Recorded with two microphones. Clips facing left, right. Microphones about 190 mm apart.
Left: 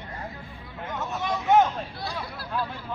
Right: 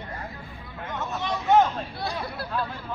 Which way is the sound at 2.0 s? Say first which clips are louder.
Right 3 dB; 60° right (ahead or behind).